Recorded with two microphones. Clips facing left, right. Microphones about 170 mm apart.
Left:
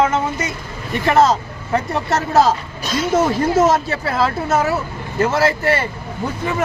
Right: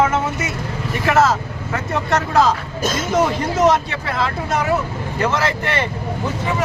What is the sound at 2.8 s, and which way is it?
Speech, 45° right (ahead or behind).